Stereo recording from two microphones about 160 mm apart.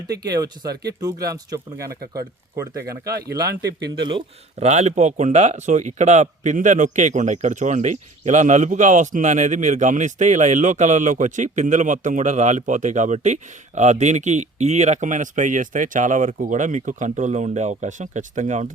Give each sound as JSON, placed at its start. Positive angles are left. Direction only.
{"t": 0.3, "sound": "speech", "side_deg": -25}
{"t": 0.7, "sound": "speech", "side_deg": -90}
{"t": 1.0, "sound": "speech", "side_deg": -20}
{"t": 3.7, "sound": "speech", "side_deg": -90}
{"t": 4.6, "sound": "speech", "side_deg": -45}